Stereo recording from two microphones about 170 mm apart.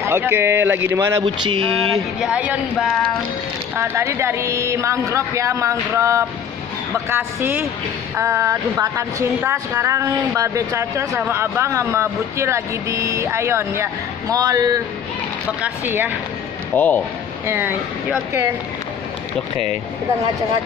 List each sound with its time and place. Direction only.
0.0 s a woman's voice: 15° right (ahead or behind)
2.1 s a woman's voice: 5° right (ahead or behind)
16.7 s speech: 10° left (ahead or behind)
17.5 s a woman's voice: 10° right (ahead or behind)